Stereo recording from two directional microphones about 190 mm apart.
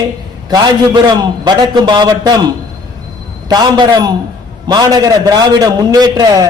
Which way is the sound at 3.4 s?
20° right (ahead or behind).